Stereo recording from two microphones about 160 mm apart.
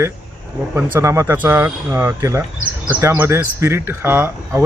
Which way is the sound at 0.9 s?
15° right (ahead or behind).